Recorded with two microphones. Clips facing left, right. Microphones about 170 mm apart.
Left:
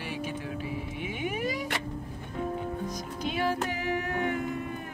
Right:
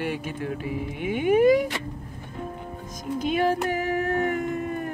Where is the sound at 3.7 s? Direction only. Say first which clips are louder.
Right 6 dB; 50° right (ahead or behind).